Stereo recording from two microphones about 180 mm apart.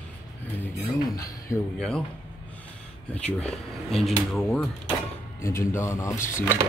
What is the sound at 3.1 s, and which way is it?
Speech, 5° left (ahead or behind).